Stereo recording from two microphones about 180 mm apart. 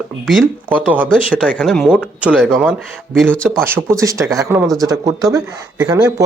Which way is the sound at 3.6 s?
15° right (ahead or behind).